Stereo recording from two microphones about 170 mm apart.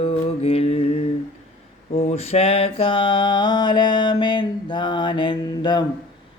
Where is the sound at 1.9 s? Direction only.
40° left (ahead or behind).